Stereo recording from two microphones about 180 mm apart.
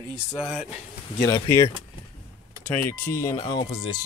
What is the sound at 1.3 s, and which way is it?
Speech, 15° left (ahead or behind).